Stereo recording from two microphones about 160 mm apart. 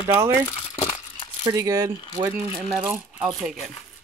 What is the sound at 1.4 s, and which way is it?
Speech, 20° right (ahead or behind).